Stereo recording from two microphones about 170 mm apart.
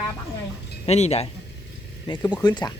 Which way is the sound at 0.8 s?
40° left (ahead or behind).